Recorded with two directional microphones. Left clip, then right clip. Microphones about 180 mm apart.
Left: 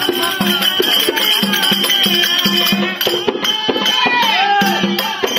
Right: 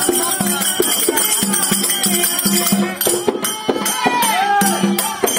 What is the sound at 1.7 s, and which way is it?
Music, 35° right (ahead or behind).